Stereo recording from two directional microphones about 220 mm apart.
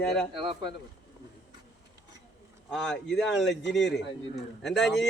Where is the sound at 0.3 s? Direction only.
20° right (ahead or behind).